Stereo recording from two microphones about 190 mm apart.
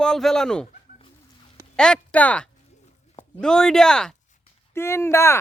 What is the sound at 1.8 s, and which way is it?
A man's voice, 5° left (ahead or behind).